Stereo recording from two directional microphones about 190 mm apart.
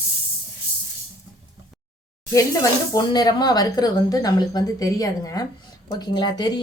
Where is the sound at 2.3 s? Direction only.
15° left (ahead or behind).